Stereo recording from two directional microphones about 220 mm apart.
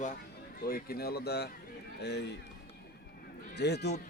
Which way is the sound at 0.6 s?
45° left (ahead or behind).